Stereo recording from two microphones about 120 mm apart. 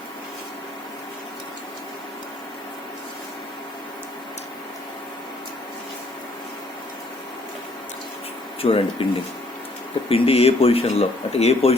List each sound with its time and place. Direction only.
8.6 s speech: 50° left (ahead or behind)
10.1 s speech: 55° left (ahead or behind)